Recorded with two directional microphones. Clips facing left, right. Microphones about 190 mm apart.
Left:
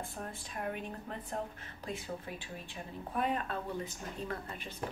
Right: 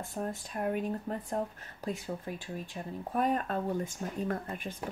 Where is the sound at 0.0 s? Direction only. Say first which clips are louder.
Right 6 dB; 45° right (ahead or behind).